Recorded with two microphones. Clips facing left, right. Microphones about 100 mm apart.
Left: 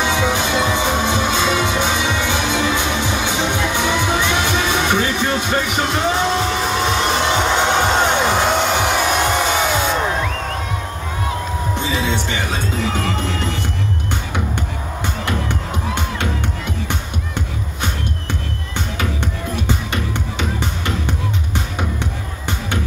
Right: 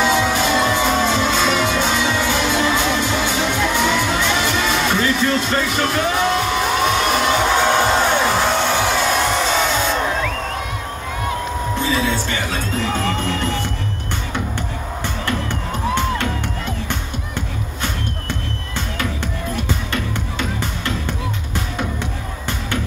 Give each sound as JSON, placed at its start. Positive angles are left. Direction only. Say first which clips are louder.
{"t": 0.0, "sound": "music", "louder": "right 1 dB", "side_deg": 20}
{"t": 11.7, "sound": "music", "louder": "right 2 dB", "side_deg": 20}
{"t": 19.5, "sound": "music", "louder": "left 1 dB", "side_deg": 20}